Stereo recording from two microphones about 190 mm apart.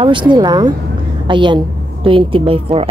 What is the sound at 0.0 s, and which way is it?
A woman's voice, 25° right (ahead or behind).